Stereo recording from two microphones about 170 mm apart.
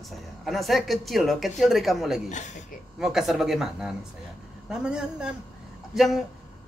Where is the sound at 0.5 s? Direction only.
Centre (ahead or behind).